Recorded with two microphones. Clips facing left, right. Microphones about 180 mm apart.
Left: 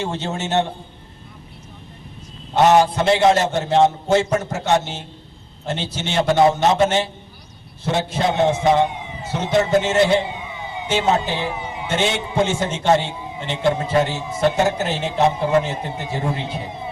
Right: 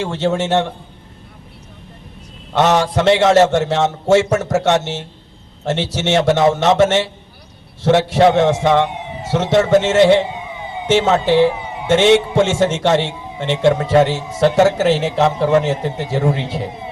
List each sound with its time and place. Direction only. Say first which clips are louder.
0.0 s a man's voice: right 7 dB; 90° right
2.6 s a man's voice: even; 90° right